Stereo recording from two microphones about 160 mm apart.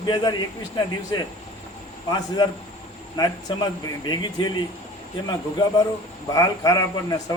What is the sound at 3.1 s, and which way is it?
A man's voice, 25° left (ahead or behind).